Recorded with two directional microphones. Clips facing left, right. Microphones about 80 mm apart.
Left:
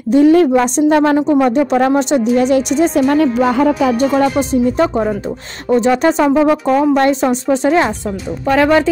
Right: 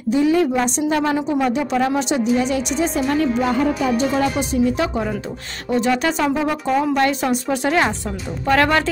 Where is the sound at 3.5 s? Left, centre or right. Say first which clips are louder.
Left 6 dB; left.